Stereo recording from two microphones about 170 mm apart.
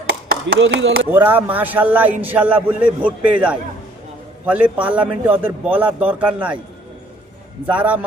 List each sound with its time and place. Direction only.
0.3 s speech: 75° right (ahead or behind)
1.1 s a man's voice: 10° right (ahead or behind)
7.7 s a man's voice: 10° right (ahead or behind)